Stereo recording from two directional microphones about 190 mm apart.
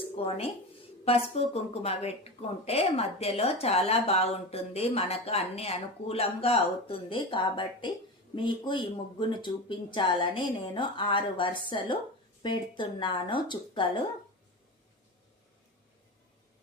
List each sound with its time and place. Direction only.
0.2 s speech: 30° left (ahead or behind)